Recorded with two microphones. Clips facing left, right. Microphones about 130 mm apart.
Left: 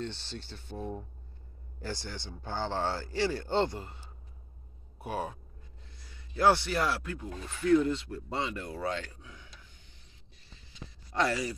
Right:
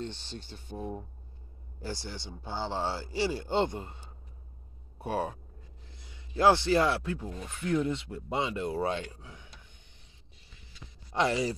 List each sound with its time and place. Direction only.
0.0 s speech: 45° right (ahead or behind)
0.7 s a man's voice: 10° right (ahead or behind); by 9.6 s 25° right (ahead or behind)
11.1 s speech: 20° right (ahead or behind)